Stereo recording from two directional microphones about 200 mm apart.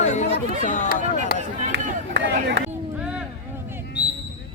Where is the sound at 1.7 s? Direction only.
65° right (ahead or behind).